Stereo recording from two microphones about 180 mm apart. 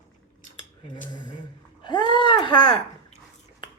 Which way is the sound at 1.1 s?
25° left (ahead or behind).